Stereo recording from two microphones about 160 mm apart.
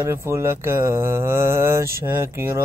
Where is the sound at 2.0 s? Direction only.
15° right (ahead or behind).